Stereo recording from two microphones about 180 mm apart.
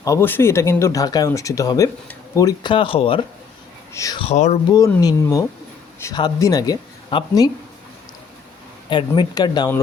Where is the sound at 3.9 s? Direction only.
15° left (ahead or behind).